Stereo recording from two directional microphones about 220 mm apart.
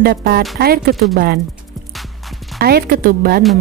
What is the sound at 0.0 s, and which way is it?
A woman's voice, 45° right (ahead or behind).